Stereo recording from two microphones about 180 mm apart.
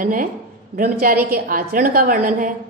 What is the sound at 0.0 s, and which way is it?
A woman's voice, 50° right (ahead or behind).